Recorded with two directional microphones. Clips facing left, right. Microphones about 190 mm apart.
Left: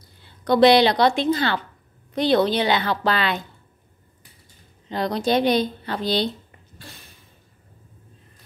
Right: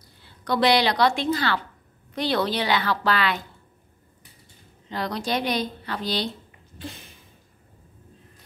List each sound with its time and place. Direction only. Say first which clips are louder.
0.5 s a woman's voice: left 6 dB; 25° left (ahead or behind)
4.8 s a woman's voice: left 6 dB; 25° left (ahead or behind)
6.8 s a sound: right 8 dB; 25° right (ahead or behind)